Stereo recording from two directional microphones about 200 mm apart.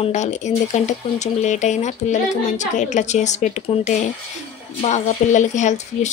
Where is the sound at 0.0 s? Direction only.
35° left (ahead or behind).